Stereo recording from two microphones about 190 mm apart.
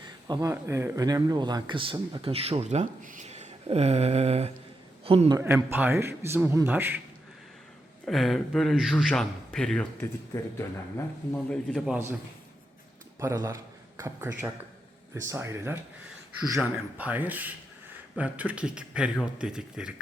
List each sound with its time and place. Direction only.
0.0 s a sound: 20° right (ahead or behind)
0.5 s a man's voice: 15° right (ahead or behind); by 5.4 s 30° right (ahead or behind)
5.4 s a man's voice: 10° right (ahead or behind)
8.0 s a man's voice: centre (ahead or behind)
13.1 s a man's voice: 15° right (ahead or behind)